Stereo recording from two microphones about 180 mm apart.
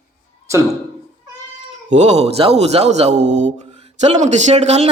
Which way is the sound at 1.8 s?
40° right (ahead or behind).